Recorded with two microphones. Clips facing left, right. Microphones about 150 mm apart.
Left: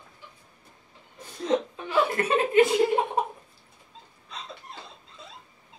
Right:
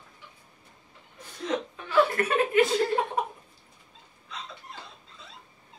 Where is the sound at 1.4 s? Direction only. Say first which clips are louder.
Left 5 dB; 25° left (ahead or behind).